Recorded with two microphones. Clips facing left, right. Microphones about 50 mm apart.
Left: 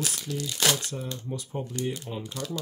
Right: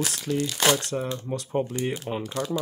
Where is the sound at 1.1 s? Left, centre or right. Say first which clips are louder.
Right 7 dB; right.